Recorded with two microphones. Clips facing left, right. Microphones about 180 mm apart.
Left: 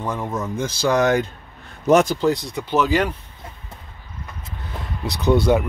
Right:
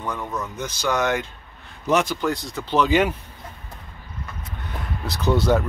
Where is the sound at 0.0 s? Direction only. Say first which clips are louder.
Left 3 dB; 25° left (ahead or behind); by 2.1 s 45° left (ahead or behind).